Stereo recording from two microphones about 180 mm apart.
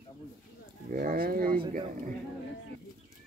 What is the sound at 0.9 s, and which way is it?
Speech, 55° right (ahead or behind).